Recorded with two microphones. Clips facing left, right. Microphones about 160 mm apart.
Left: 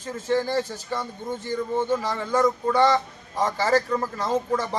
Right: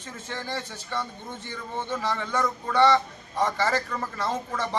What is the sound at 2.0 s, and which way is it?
Speech, 35° left (ahead or behind).